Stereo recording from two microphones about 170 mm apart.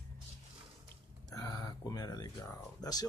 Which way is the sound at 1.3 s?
25° left (ahead or behind).